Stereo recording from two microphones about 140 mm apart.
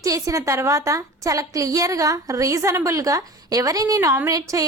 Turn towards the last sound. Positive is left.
turn(degrees=-25)  # may be behind; listen again after turning